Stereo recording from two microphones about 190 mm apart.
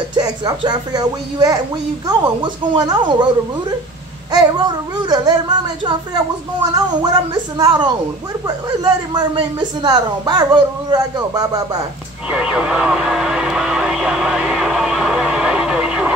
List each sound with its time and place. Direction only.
0.1 s a woman's voice: 20° right (ahead or behind)
4.3 s a woman's voice: 20° right (ahead or behind)
12.3 s vehicle: 5° right (ahead or behind)